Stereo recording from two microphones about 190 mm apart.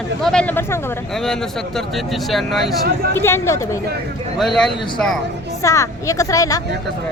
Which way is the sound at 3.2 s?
15° left (ahead or behind).